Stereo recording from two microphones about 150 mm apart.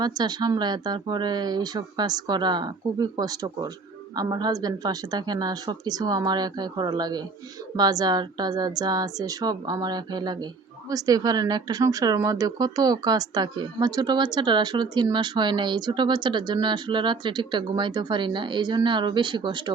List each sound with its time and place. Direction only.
0.0 s a woman's voice: 30° right (ahead or behind)